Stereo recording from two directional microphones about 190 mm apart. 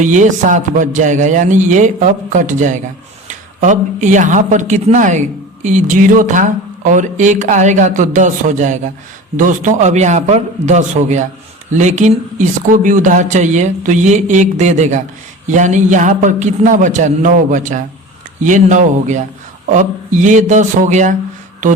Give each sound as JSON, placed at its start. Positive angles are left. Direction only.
{"t": 0.0, "sound": "speech", "side_deg": -40}